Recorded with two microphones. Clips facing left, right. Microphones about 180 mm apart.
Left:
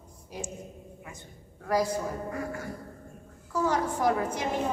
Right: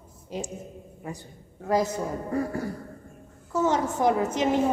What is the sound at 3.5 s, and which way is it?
A woman's voice, 20° right (ahead or behind).